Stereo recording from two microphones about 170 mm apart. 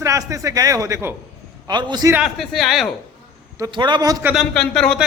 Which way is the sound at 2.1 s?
Centre (ahead or behind).